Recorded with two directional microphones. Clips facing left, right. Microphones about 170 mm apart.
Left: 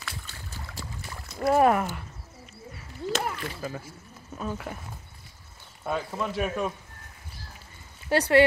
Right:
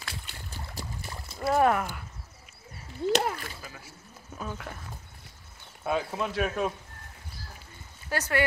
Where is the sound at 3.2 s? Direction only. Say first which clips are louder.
Right 2 dB; 40° right (ahead or behind).